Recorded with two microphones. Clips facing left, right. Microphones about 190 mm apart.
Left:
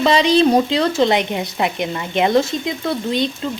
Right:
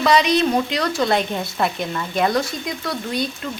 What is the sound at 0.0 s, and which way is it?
Speech, 30° left (ahead or behind).